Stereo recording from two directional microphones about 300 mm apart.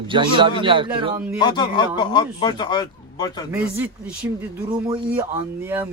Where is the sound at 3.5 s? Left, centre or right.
Centre.